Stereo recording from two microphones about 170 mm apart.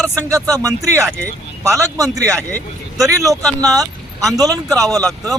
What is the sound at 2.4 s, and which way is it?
Speech, 10° left (ahead or behind).